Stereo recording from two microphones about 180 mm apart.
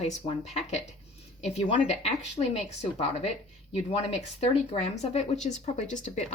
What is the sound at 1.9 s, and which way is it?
Speech, 35° left (ahead or behind).